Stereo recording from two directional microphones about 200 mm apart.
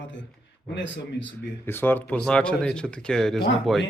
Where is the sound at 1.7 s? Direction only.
10° left (ahead or behind).